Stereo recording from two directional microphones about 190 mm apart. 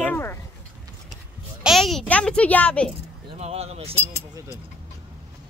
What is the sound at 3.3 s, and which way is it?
Speech, 35° right (ahead or behind).